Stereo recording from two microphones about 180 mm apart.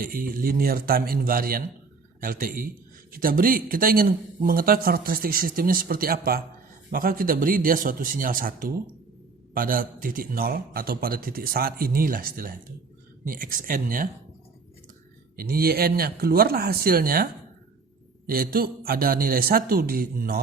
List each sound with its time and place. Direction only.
0.0 s a man's voice: 55° right (ahead or behind)
15.4 s a man's voice: 60° right (ahead or behind)
18.3 s a man's voice: 55° right (ahead or behind)